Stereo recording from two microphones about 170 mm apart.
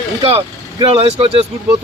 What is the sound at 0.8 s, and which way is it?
Speech, 30° right (ahead or behind).